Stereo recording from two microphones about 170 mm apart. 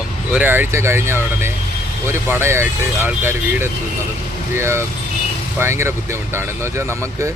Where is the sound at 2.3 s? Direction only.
15° right (ahead or behind).